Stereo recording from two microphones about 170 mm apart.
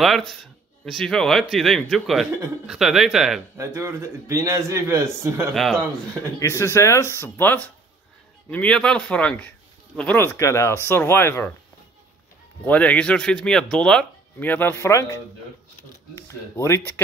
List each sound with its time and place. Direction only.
0.0 s speech: centre (ahead or behind)
3.5 s speech: 15° right (ahead or behind)
5.5 s speech: centre (ahead or behind)
6.4 s speech: 15° left (ahead or behind)
12.6 s speech: 10° left (ahead or behind)